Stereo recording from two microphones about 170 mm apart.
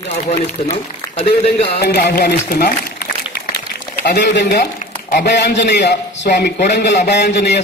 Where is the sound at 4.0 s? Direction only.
80° left.